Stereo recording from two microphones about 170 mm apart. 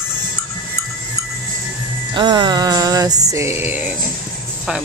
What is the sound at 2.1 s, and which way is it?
Music, 25° right (ahead or behind).